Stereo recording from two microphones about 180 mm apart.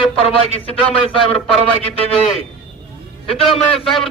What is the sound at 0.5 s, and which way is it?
Speech, 30° left (ahead or behind).